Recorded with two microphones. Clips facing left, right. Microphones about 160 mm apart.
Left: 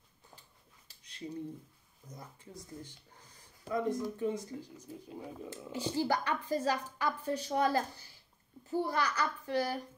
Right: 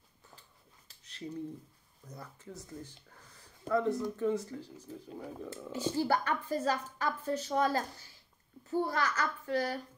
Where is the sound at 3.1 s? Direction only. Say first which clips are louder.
Right 1 dB; 15° left (ahead or behind).